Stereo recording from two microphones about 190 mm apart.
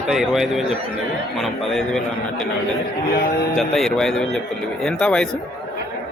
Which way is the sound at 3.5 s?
Centre (ahead or behind).